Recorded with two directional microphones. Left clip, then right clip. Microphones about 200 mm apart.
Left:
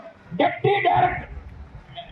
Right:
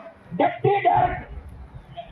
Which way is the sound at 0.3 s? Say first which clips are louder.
Even; 20° right (ahead or behind).